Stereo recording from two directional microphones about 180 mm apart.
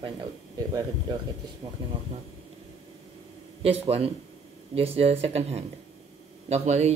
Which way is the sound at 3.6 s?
35° right (ahead or behind).